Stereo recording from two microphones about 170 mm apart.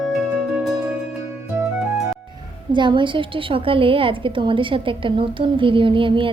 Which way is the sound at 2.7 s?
30° right (ahead or behind).